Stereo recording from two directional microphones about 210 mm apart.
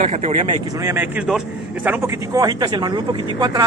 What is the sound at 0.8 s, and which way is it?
A man's voice, 10° right (ahead or behind).